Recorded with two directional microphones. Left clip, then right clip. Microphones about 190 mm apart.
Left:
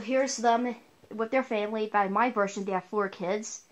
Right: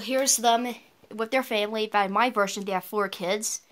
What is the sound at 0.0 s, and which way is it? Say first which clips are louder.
Speech: right 2 dB; 25° right (ahead or behind).